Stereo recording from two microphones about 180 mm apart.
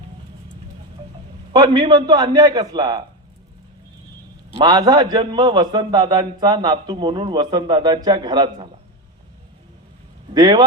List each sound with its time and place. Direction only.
1.5 s a man's voice: 25° right (ahead or behind)
4.5 s a man's voice: 25° right (ahead or behind)
10.3 s a man's voice: 25° right (ahead or behind)